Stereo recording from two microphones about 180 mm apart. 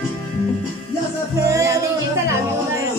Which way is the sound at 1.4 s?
20° right (ahead or behind).